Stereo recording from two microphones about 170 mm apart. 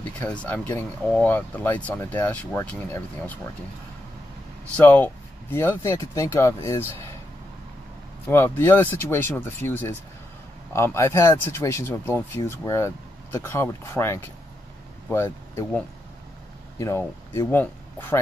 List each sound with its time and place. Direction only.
0.0 s speech: 10° left (ahead or behind)
4.7 s speech: 10° left (ahead or behind)
8.3 s speech: 15° left (ahead or behind)